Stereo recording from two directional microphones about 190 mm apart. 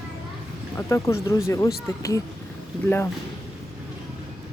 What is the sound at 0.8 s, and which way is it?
Speech, 15° left (ahead or behind).